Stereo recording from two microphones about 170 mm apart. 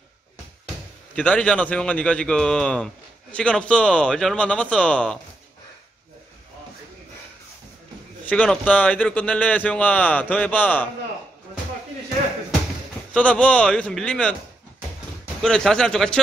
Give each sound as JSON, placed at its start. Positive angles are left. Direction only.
{"t": 1.1, "sound": "a man's voice", "side_deg": 10}
{"t": 8.3, "sound": "speech", "side_deg": 5}
{"t": 13.1, "sound": "a man's voice", "side_deg": 5}
{"t": 15.4, "sound": "a man's voice", "side_deg": 5}